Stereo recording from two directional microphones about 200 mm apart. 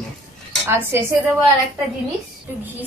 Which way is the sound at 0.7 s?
10° right (ahead or behind).